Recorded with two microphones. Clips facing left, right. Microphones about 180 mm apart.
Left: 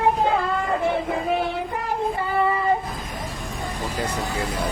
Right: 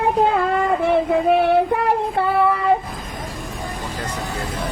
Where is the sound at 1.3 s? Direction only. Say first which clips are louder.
Right 11 dB; 70° right (ahead or behind).